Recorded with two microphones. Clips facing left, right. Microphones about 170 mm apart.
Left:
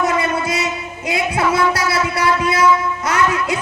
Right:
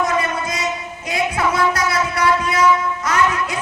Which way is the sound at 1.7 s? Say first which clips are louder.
Left 1 dB; 30° left (ahead or behind).